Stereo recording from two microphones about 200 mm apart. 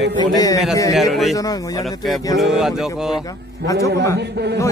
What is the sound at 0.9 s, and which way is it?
Speech, centre (ahead or behind).